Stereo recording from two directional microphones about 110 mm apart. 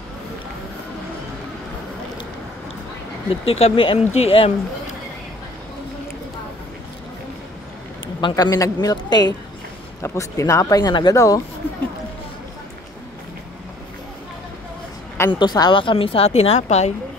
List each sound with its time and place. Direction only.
3.3 s speech: 65° left (ahead or behind)
4.1 s a woman's voice: 65° left (ahead or behind)
8.2 s speech: 45° left (ahead or behind)
8.5 s speech: 30° left (ahead or behind)
8.9 s speech: 40° left (ahead or behind)
10.0 s speech: 30° left (ahead or behind)
15.3 s a woman's voice: 40° left (ahead or behind); by 16.9 s 90° left